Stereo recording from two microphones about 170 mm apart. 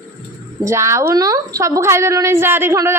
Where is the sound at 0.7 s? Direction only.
15° right (ahead or behind).